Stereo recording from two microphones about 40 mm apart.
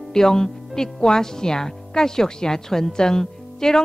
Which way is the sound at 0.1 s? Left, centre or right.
Centre.